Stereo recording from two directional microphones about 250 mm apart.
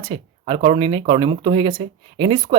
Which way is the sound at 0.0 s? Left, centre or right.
Right.